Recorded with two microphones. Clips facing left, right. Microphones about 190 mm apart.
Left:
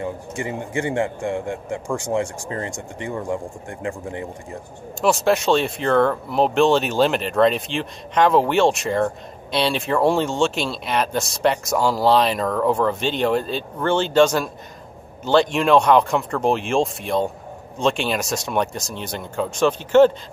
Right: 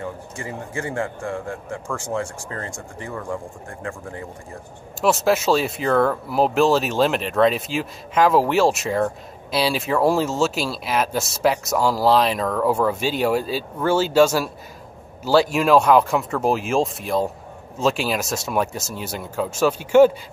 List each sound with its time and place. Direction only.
0.0 s a man's voice: 20° left (ahead or behind)
5.0 s speech: centre (ahead or behind)